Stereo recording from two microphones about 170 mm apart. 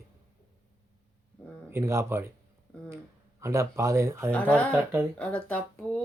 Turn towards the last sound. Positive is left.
turn(degrees=10)  # may be behind; listen again after turning